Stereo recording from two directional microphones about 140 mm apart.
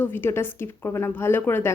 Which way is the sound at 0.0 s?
15° left (ahead or behind).